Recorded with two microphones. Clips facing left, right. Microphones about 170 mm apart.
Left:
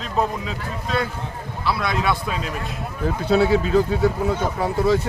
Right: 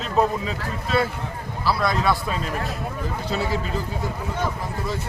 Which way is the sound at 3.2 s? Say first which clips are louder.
Left 10 dB; 65° left (ahead or behind).